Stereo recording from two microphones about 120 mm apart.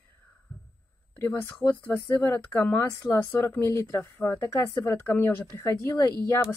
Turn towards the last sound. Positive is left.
turn(degrees=30)  # may be behind; listen again after turning